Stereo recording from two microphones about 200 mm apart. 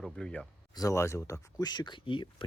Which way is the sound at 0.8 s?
15° left (ahead or behind).